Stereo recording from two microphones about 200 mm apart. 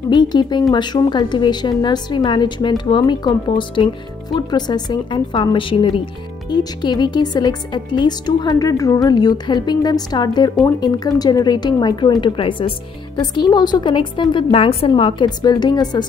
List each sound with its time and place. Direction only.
0.1 s a woman's voice: 20° left (ahead or behind)